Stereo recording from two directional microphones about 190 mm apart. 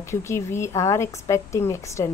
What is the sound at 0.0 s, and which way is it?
A woman's voice, 15° left (ahead or behind).